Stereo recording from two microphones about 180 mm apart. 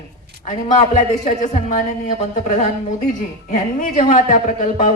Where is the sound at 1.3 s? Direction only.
40° left (ahead or behind).